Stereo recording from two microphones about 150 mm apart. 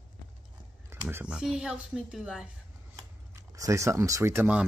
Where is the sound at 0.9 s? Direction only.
15° right (ahead or behind).